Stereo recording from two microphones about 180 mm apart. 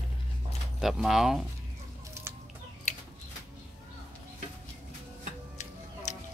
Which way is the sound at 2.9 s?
40° left (ahead or behind).